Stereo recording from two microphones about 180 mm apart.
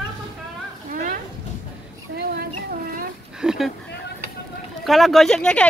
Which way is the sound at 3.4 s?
Centre (ahead or behind).